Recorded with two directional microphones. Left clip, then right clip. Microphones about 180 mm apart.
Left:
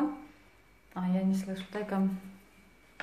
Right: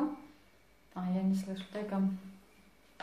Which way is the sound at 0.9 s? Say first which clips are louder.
Left 3 dB; 20° left (ahead or behind).